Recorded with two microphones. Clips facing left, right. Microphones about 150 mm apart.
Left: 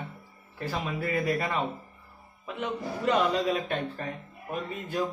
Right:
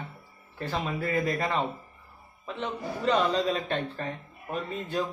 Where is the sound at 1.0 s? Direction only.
10° left (ahead or behind).